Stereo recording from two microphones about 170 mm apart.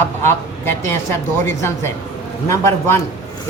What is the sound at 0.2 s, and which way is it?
A woman's voice, 15° left (ahead or behind).